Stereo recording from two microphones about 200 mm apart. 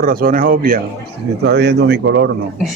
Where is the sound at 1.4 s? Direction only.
55° right (ahead or behind).